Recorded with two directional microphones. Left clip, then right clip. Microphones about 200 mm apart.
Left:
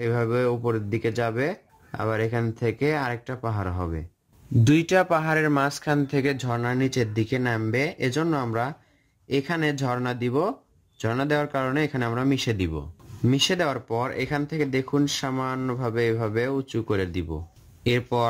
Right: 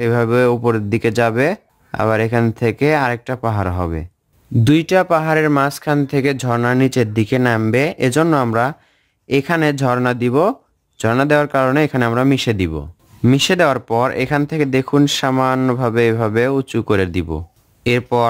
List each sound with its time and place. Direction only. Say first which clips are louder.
0.0 s speech: right 9 dB; 40° right (ahead or behind)
4.6 s speech: right 7 dB; 20° right (ahead or behind); by 17.4 s 40° right (ahead or behind)
17.8 s speech: right 8 dB; 25° right (ahead or behind)